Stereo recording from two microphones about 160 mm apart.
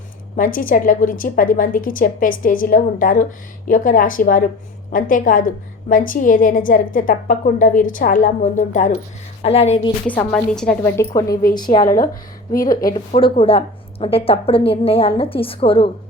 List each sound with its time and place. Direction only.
0.3 s a woman's voice: 60° left (ahead or behind)
9.4 s a woman's voice: 40° left (ahead or behind)
10.1 s a woman's voice: 5° left (ahead or behind)
10.9 s a woman's voice: 20° left (ahead or behind)
11.8 s a woman's voice: 60° left (ahead or behind)
13.1 s a woman's voice: 35° left (ahead or behind)